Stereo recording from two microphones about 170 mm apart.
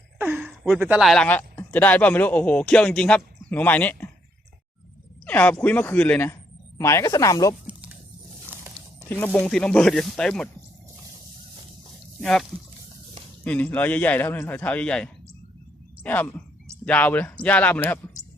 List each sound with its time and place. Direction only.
0.2 s speech: 10° right (ahead or behind); by 4.1 s 10° left (ahead or behind)
5.2 s a man's voice: 10° left (ahead or behind)
7.7 s a sound: 10° right (ahead or behind)
9.0 s a man's voice: 10° left (ahead or behind)
12.2 s a man's voice: 5° left (ahead or behind)